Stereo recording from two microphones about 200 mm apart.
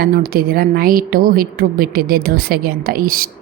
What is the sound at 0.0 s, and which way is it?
A woman's voice, 50° right (ahead or behind).